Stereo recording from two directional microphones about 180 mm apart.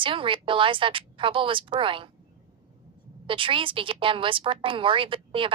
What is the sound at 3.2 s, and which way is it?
A woman's voice, 30° right (ahead or behind).